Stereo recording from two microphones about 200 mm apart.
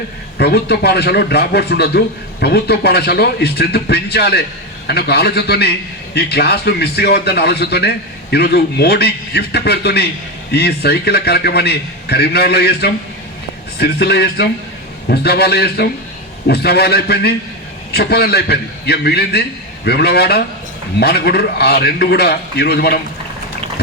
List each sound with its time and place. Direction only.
0.3 s a man's voice: 55° left (ahead or behind)